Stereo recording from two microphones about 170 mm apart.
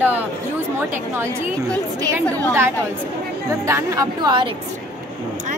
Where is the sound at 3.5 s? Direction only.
20° right (ahead or behind).